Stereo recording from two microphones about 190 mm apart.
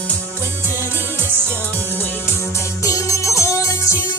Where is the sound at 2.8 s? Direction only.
15° left (ahead or behind).